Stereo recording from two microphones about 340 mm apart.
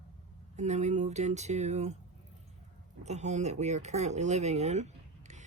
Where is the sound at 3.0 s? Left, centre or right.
Centre.